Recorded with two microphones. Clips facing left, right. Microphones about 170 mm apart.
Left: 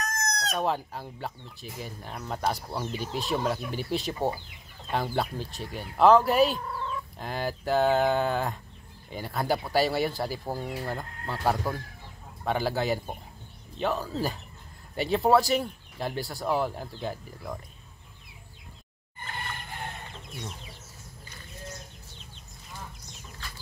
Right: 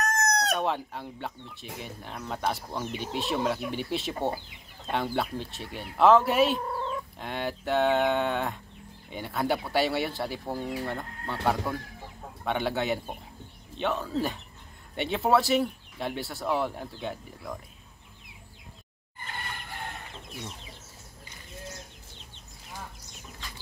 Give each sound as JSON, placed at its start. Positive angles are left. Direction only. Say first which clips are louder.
{"t": 0.0, "sound": "chicken", "louder": "right 5 dB", "side_deg": -65}
{"t": 0.6, "sound": "speech", "louder": "left 1 dB", "side_deg": 0}